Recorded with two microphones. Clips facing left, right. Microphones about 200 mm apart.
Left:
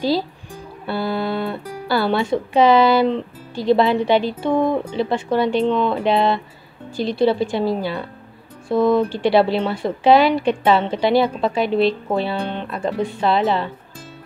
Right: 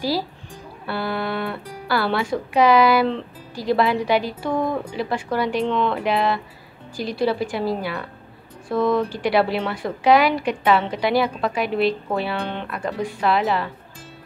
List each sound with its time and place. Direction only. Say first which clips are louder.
0.8 s speech: left 3 dB; 25° left (ahead or behind)